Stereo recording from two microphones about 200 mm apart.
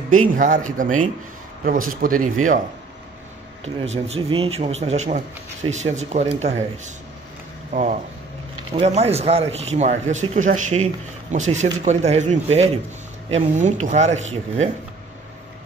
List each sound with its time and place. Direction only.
0.1 s a man's voice: 40° right (ahead or behind)
3.6 s speech: 30° right (ahead or behind)
7.7 s speech: 40° right (ahead or behind)